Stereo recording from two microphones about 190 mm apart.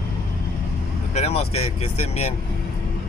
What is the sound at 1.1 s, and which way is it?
Speech, 35° left (ahead or behind).